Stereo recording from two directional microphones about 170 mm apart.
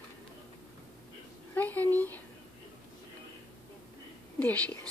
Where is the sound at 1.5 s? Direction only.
10° left (ahead or behind).